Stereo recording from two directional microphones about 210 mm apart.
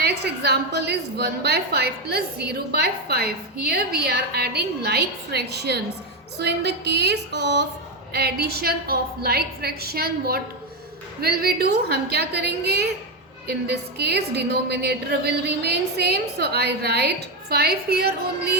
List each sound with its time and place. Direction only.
0.0 s a woman's voice: 50° right (ahead or behind)